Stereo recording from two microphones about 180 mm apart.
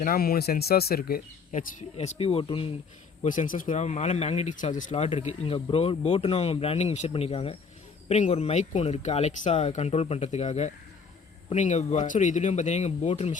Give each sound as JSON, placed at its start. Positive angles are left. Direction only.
{"t": 0.0, "sound": "speech", "side_deg": 55}
{"t": 3.2, "sound": "speech", "side_deg": 45}